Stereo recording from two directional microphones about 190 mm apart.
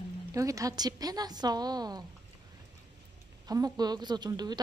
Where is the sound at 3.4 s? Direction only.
20° right (ahead or behind).